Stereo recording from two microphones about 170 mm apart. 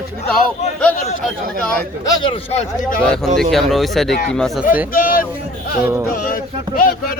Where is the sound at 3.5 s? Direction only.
Centre (ahead or behind).